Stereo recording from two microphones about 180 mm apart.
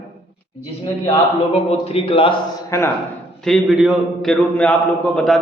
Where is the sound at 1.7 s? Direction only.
35° left (ahead or behind).